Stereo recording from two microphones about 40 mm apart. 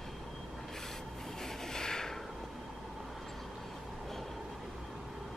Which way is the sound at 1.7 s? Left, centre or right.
Centre.